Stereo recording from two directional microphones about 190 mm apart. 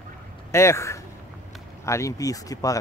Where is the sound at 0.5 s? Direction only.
15° left (ahead or behind).